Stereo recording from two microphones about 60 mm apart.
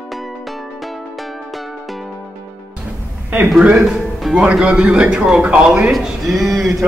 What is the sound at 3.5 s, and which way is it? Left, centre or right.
Speech, centre.